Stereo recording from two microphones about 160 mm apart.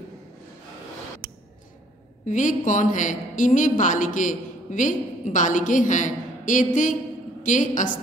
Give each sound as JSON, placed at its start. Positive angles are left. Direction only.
{"t": 2.2, "sound": "a woman's voice", "side_deg": 50}